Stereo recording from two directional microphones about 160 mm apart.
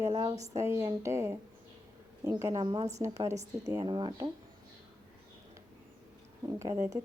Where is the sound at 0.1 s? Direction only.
30° right (ahead or behind).